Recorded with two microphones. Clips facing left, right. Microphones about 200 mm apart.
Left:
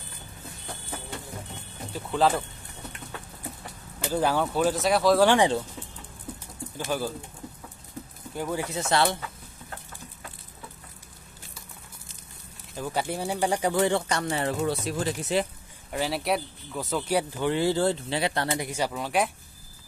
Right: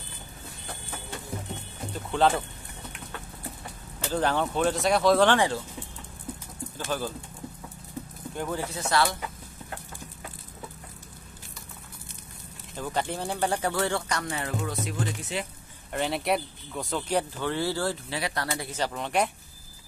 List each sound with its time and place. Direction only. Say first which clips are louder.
2.0 s speech: even; centre (ahead or behind)
4.0 s speech: left 1 dB; 10° left (ahead or behind)
5.3 s speech: left 3 dB; 15° left (ahead or behind)
6.8 s speech: left 2 dB; 10° left (ahead or behind)
8.4 s speech: left 2 dB; 10° left (ahead or behind)
8.7 s speech: left 2 dB; 25° left (ahead or behind)
12.7 s speech: left 1 dB; 10° left (ahead or behind); by 15.4 s 35° left (ahead or behind)
15.9 s speech: even; centre (ahead or behind); by 18.7 s 25° left (ahead or behind)
18.7 s speech: left 1 dB; 5° left (ahead or behind)